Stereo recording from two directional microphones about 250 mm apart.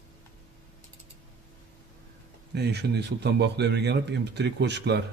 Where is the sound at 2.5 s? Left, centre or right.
Right.